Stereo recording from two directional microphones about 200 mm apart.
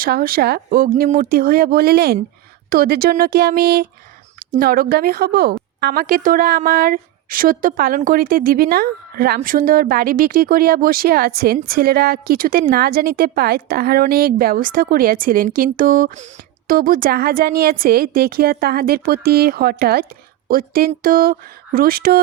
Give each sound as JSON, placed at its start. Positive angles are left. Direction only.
{"t": 0.0, "sound": "a woman's voice", "side_deg": -50}